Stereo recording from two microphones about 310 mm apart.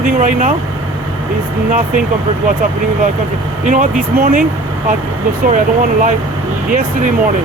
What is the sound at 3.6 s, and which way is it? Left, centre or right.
Speech, right.